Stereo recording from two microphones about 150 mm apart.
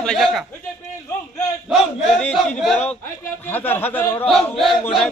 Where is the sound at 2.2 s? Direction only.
5° left (ahead or behind).